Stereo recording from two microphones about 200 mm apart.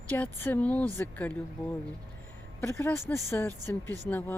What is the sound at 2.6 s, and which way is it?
Speech, 10° left (ahead or behind).